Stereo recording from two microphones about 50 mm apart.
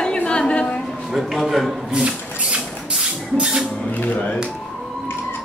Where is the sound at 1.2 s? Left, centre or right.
Centre.